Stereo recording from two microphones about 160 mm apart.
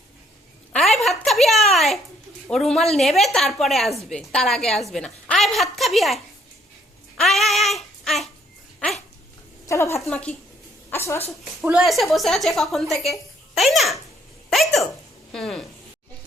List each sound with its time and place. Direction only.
0.7 s a sound: centre (ahead or behind)
2.5 s a woman's voice: 5° left (ahead or behind)
7.2 s child singing: centre (ahead or behind)
9.6 s a woman's voice: 20° left (ahead or behind)
10.0 s a woman's voice: 5° left (ahead or behind)
10.8 s a sound: 15° left (ahead or behind)
11.6 s a woman's voice: 5° right (ahead or behind)
14.5 s hiccup: centre (ahead or behind)
15.3 s a woman's voice: 5° left (ahead or behind)